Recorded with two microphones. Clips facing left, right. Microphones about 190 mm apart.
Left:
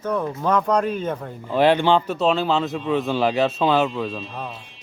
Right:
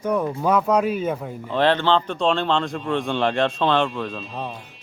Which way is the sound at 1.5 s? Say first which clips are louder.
Left 2 dB; 10° left (ahead or behind).